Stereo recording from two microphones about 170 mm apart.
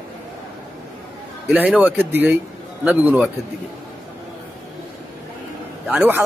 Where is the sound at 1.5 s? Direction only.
5° right (ahead or behind).